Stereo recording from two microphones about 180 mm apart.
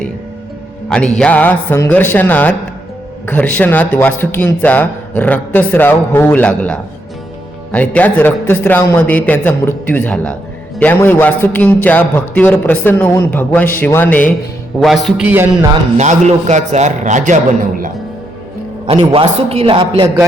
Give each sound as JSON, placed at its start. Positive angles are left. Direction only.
{"t": 0.9, "sound": "music", "side_deg": 5}
{"t": 1.2, "sound": "a man's voice", "side_deg": 10}
{"t": 16.0, "sound": "a man's voice", "side_deg": -40}
{"t": 18.9, "sound": "a man's voice", "side_deg": -35}